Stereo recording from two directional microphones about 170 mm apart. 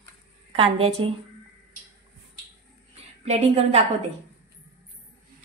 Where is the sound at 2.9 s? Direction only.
40° right (ahead or behind).